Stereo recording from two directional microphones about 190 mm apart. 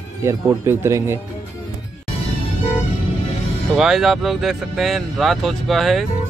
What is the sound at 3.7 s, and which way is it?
Speech, centre (ahead or behind).